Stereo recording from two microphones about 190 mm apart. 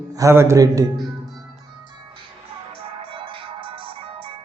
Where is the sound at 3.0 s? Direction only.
30° right (ahead or behind).